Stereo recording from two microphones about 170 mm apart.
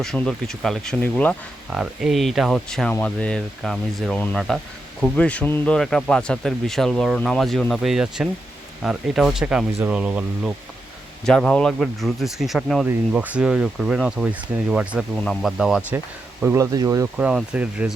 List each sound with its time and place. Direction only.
0.0 s speech: centre (ahead or behind)
1.7 s speech: 5° right (ahead or behind)
11.3 s speech: 5° left (ahead or behind)
16.4 s speech: 15° right (ahead or behind)
17.2 s speech: 5° right (ahead or behind)